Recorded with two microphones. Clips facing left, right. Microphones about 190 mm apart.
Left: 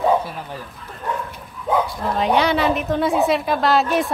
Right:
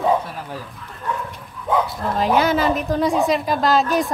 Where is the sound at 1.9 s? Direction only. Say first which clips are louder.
Even; centre (ahead or behind).